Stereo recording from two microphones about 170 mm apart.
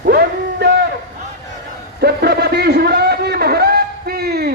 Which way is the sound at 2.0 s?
70° right (ahead or behind).